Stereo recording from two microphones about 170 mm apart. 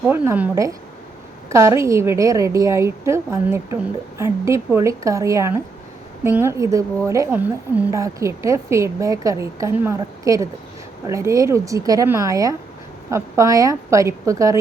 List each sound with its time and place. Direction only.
0.1 s a woman's voice: 10° right (ahead or behind)